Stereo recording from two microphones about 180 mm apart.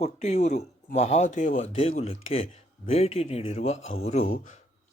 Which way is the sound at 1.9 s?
35° left (ahead or behind).